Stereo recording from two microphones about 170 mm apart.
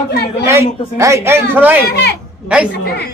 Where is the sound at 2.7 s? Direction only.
70° left (ahead or behind).